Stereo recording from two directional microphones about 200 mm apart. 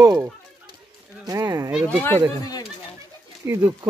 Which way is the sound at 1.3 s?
15° right (ahead or behind).